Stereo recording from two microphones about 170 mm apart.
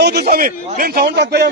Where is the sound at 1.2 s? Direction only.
75° right (ahead or behind).